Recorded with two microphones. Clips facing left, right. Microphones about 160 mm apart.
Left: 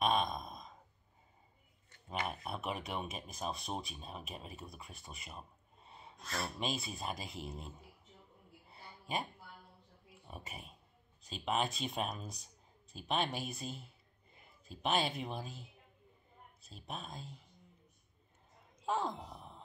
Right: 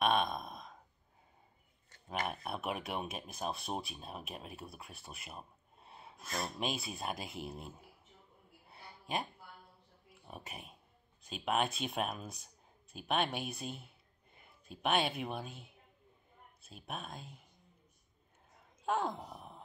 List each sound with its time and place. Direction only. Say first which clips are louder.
0.0 s sigh: right 1 dB; centre (ahead or behind)
2.0 s speech: right 1 dB; 5° right (ahead or behind)
8.6 s a sound: right 1 dB; centre (ahead or behind)
10.2 s speech: right 1 dB; centre (ahead or behind)
14.5 s a sound: right 1 dB; centre (ahead or behind)
15.0 s speech: right 2 dB; centre (ahead or behind)
18.9 s speech: right 2 dB; 5° right (ahead or behind)